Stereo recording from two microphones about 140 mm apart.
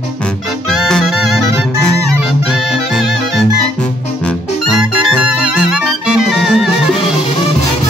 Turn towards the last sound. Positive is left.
turn(degrees=0)  # may be behind; listen again after turning